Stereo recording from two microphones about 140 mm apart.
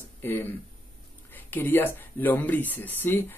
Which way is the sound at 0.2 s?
15° left (ahead or behind).